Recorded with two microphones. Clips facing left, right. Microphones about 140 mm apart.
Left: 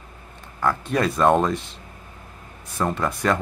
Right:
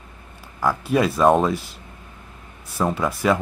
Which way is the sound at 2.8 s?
5° right (ahead or behind).